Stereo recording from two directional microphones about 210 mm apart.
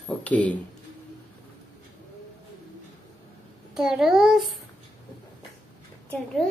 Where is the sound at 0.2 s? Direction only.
5° left (ahead or behind).